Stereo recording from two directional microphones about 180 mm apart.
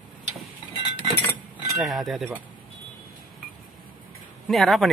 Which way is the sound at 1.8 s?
Centre (ahead or behind).